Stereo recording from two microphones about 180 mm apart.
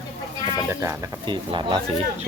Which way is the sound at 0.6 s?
15° right (ahead or behind).